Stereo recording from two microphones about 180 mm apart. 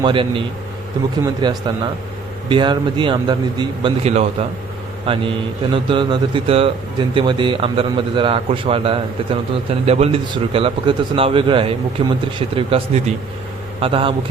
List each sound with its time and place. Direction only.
0.0 s a man's voice: 30° right (ahead or behind)